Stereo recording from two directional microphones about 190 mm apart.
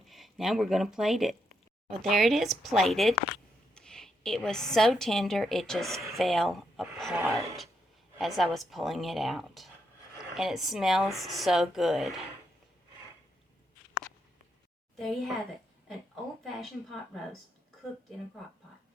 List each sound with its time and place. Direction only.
0.0 s a woman's voice: centre (ahead or behind)
8.2 s a woman's voice: centre (ahead or behind)
16.4 s a woman's voice: centre (ahead or behind)